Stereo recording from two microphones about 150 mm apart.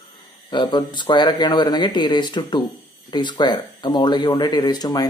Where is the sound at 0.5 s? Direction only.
30° left (ahead or behind).